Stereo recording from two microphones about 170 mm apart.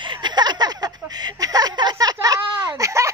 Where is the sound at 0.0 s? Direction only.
25° right (ahead or behind).